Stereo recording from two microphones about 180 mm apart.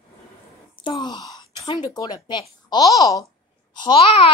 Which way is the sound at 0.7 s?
25° left (ahead or behind).